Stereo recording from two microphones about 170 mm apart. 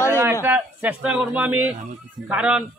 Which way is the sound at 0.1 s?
15° right (ahead or behind).